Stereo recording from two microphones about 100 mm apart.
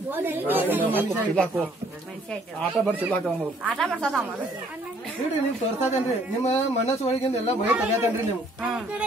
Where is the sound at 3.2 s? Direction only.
5° left (ahead or behind).